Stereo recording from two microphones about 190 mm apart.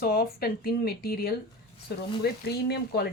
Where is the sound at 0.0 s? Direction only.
50° left (ahead or behind).